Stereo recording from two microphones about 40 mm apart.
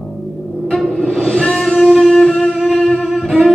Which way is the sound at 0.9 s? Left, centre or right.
Centre.